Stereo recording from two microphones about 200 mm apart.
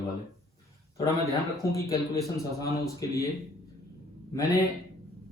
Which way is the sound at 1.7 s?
15° left (ahead or behind).